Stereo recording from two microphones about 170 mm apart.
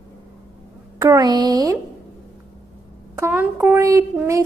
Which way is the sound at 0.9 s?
20° right (ahead or behind).